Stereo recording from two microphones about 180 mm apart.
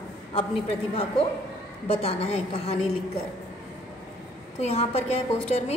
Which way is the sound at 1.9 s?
35° left (ahead or behind).